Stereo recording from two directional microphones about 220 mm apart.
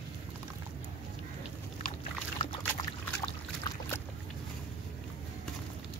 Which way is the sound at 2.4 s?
20° left (ahead or behind).